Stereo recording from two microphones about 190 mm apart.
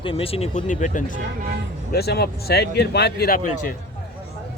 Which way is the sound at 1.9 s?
55° left (ahead or behind).